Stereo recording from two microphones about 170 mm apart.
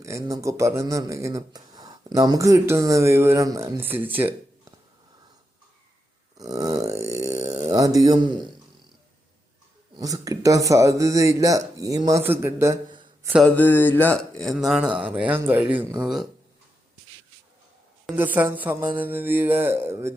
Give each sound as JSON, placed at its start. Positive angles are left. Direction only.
{"t": 0.0, "sound": "speech", "side_deg": -15}
{"t": 6.3, "sound": "a sound", "side_deg": -20}
{"t": 7.7, "sound": "speech", "side_deg": -20}
{"t": 10.0, "sound": "speech", "side_deg": -20}
{"t": 13.4, "sound": "speech", "side_deg": 10}
{"t": 18.2, "sound": "speech", "side_deg": -10}